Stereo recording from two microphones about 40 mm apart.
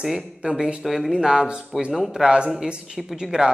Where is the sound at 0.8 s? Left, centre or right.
Centre.